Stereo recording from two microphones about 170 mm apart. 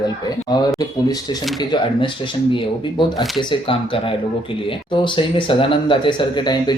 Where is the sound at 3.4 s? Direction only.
30° left (ahead or behind).